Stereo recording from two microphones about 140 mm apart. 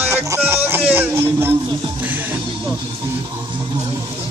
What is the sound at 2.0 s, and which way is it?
Music, 10° right (ahead or behind).